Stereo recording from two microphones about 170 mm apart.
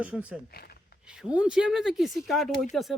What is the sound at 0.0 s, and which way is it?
Speech, 5° right (ahead or behind).